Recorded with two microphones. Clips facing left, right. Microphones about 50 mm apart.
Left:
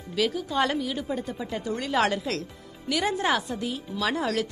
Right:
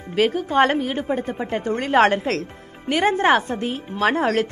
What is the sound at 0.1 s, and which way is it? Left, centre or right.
A woman's voice, right.